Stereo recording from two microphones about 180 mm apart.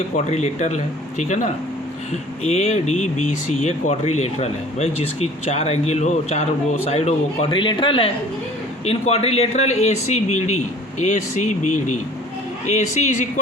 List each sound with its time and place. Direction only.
0.3 s speech: 40° left (ahead or behind)
2.5 s speech: 40° left (ahead or behind)